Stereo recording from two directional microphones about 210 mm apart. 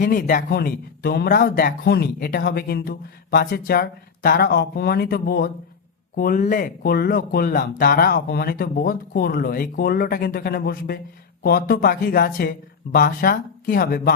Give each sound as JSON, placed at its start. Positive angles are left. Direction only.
{"t": 0.0, "sound": "speech", "side_deg": 40}